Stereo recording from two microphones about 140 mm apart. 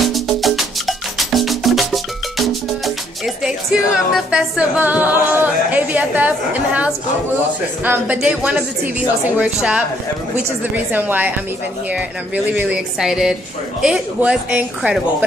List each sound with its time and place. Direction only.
0.0 s music: centre (ahead or behind)
10.9 s music: 15° right (ahead or behind)
12.5 s a woman's voice: 5° right (ahead or behind)